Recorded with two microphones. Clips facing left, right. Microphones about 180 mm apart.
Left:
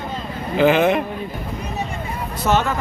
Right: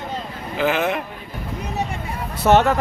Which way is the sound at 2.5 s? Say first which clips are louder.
Right 4 dB; 65° right (ahead or behind).